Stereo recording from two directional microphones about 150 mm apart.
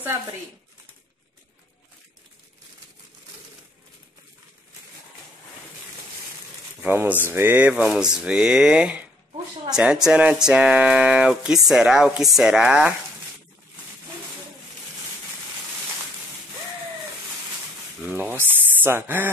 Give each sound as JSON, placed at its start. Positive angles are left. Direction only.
{"t": 0.0, "sound": "speech", "side_deg": -15}
{"t": 6.8, "sound": "speech", "side_deg": -15}
{"t": 18.3, "sound": "a sound", "side_deg": -15}